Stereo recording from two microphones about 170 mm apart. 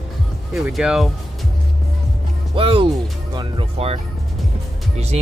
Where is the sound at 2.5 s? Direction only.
30° right (ahead or behind).